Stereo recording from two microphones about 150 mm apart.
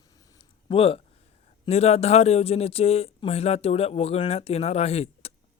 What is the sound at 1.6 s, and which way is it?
Speech, 45° left (ahead or behind).